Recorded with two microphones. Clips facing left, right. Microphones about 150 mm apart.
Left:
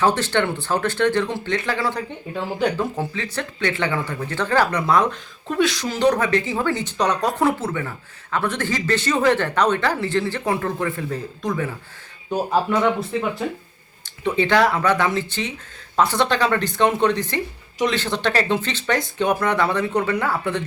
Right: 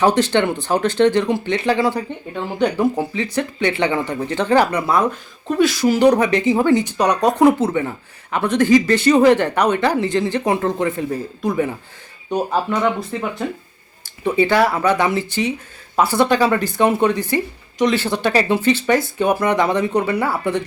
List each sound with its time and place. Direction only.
0.0 s speech: 15° right (ahead or behind)
2.3 s speech: centre (ahead or behind)
3.0 s speech: 15° right (ahead or behind)
4.9 s speech: 5° right (ahead or behind)
12.3 s speech: centre (ahead or behind)
14.0 s speech: 10° right (ahead or behind)